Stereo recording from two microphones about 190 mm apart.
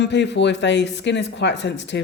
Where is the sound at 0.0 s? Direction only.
65° left (ahead or behind).